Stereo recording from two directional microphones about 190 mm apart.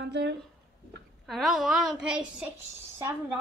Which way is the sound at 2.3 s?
10° right (ahead or behind).